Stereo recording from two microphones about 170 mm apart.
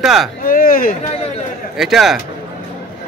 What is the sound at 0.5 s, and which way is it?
Speech, 55° left (ahead or behind).